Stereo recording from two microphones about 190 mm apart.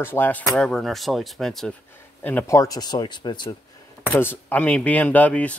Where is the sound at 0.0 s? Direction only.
10° left (ahead or behind).